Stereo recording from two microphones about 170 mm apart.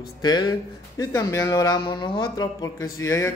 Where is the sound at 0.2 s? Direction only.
25° left (ahead or behind).